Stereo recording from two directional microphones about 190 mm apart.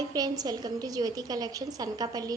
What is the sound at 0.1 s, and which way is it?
A woman's voice, 20° right (ahead or behind).